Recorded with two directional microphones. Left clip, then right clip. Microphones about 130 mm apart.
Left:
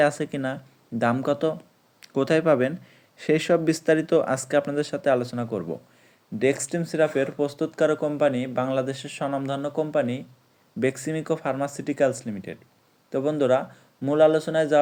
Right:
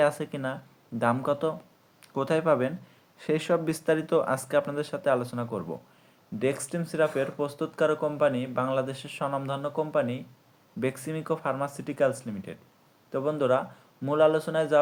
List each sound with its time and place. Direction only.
0.0 s speech: 35° left (ahead or behind)